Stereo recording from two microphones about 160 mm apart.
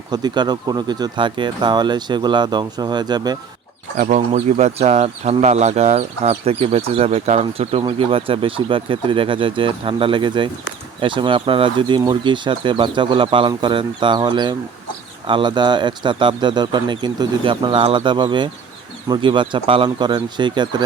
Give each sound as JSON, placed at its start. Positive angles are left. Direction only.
{"t": 0.1, "sound": "speech", "side_deg": -25}
{"t": 3.9, "sound": "speech", "side_deg": -60}
{"t": 4.3, "sound": "speech", "side_deg": -45}